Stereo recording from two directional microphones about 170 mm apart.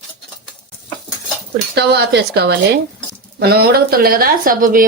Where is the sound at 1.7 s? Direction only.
75° right (ahead or behind).